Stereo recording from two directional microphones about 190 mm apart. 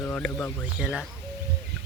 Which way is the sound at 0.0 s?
10° left (ahead or behind).